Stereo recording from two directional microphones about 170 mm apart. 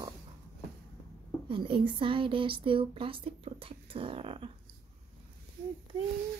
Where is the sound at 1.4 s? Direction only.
30° right (ahead or behind).